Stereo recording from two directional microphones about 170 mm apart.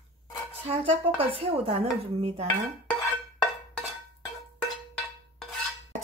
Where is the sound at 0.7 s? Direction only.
35° right (ahead or behind).